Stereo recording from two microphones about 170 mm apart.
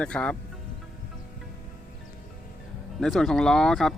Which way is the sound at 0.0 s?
5° left (ahead or behind).